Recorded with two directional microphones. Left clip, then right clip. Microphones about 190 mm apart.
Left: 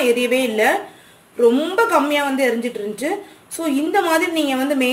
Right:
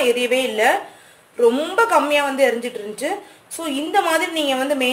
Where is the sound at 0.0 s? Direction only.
5° right (ahead or behind).